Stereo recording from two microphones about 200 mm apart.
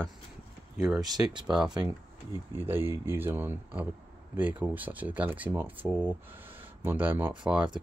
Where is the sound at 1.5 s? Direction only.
5° right (ahead or behind).